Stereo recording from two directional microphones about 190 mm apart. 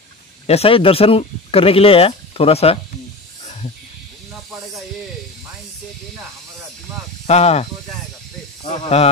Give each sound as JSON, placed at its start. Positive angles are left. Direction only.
{"t": 0.5, "sound": "speech", "side_deg": 30}
{"t": 7.2, "sound": "speech", "side_deg": 35}
{"t": 8.8, "sound": "speech", "side_deg": 35}